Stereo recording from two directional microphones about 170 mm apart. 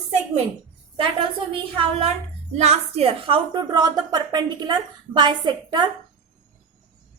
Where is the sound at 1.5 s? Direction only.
35° right (ahead or behind).